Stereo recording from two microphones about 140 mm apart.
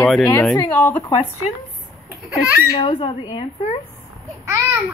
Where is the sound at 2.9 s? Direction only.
35° left (ahead or behind).